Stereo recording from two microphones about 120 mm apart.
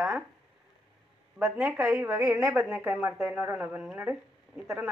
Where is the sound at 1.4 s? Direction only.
10° right (ahead or behind).